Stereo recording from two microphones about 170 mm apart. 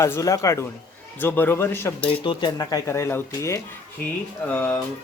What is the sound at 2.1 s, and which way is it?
Speech, 30° left (ahead or behind).